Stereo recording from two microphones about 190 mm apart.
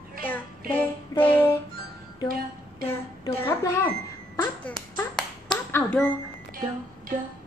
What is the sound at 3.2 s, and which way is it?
Speech, 15° left (ahead or behind).